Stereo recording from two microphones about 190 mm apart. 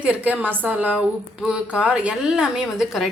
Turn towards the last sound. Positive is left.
turn(degrees=0)  # may be behind; listen again after turning